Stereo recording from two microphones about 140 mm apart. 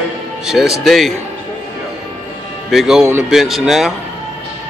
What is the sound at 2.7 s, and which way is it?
Speech, 5° right (ahead or behind).